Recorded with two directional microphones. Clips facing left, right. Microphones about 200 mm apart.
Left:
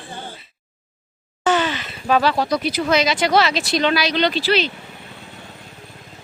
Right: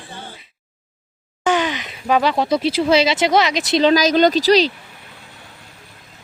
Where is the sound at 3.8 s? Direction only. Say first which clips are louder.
Right 7 dB; 40° right (ahead or behind).